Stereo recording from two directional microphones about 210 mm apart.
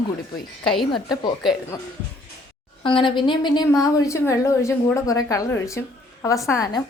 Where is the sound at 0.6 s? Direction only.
Centre (ahead or behind).